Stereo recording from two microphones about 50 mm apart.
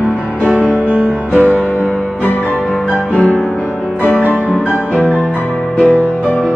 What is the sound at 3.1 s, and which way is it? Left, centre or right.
Music, left.